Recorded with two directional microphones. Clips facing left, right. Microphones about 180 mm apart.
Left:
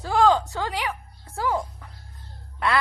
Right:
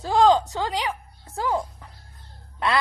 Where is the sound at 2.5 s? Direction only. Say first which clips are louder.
Even; 20° right (ahead or behind).